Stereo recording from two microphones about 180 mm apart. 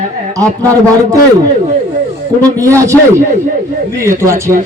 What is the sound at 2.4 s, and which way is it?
Speech, 20° right (ahead or behind).